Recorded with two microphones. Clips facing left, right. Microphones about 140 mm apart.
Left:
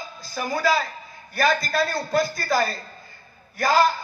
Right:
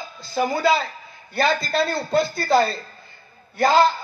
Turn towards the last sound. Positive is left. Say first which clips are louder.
# right 3 dB
turn(degrees=-25)  # may be behind; listen again after turning